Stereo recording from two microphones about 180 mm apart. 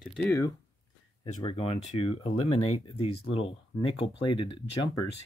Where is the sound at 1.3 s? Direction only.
35° left (ahead or behind).